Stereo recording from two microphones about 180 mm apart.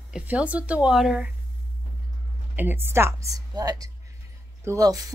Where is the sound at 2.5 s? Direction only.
10° right (ahead or behind).